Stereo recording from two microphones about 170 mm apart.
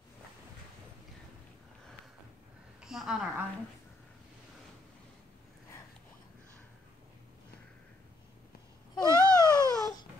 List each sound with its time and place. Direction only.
2.8 s a woman's voice: 5° right (ahead or behind)
9.0 s baby cry: 20° right (ahead or behind)